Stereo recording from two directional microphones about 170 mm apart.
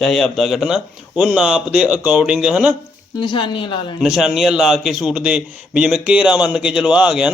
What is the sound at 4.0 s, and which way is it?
A man's voice, 5° right (ahead or behind).